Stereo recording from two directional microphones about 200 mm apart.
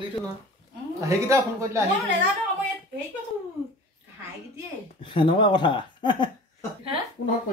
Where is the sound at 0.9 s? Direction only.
15° right (ahead or behind).